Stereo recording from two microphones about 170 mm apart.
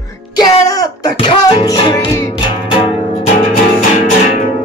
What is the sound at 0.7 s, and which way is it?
Music, 25° left (ahead or behind).